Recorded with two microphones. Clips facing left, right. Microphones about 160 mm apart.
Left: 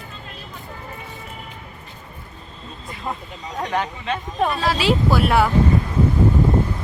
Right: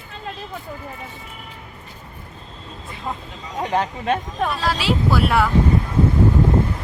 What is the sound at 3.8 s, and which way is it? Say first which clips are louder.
Speech: right 4 dB; 50° right (ahead or behind).